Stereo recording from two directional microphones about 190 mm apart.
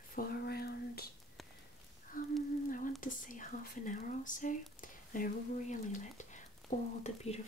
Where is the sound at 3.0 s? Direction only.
45° left (ahead or behind).